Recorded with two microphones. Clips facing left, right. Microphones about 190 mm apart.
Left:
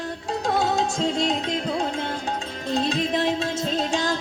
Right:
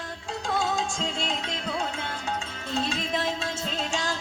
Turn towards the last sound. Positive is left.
turn(degrees=35)  # may be behind; listen again after turning